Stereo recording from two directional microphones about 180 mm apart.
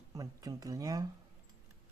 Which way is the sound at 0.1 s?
20° right (ahead or behind).